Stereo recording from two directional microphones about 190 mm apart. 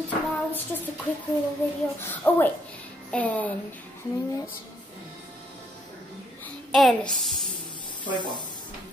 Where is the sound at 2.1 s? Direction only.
10° left (ahead or behind).